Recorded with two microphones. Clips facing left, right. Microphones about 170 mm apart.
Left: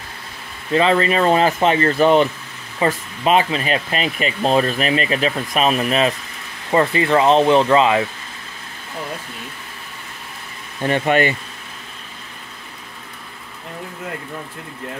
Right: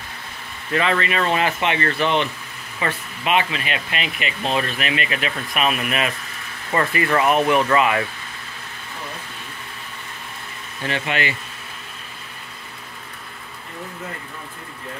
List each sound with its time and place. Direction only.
0.7 s speech: 30° left (ahead or behind)
10.8 s speech: 45° left (ahead or behind)